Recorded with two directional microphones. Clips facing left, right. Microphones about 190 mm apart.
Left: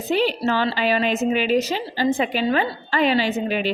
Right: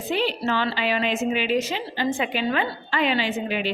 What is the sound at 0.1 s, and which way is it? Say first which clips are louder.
A woman's voice: left 4 dB; 40° left (ahead or behind).